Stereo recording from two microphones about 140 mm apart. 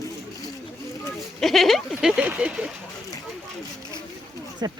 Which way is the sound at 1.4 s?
Centre (ahead or behind).